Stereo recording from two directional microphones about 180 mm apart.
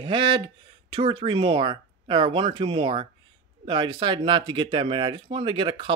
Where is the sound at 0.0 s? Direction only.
25° right (ahead or behind).